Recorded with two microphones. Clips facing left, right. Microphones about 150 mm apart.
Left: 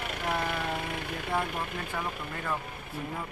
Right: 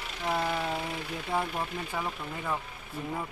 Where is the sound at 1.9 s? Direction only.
10° right (ahead or behind).